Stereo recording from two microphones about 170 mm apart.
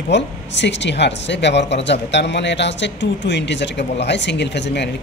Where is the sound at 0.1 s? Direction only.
90° left.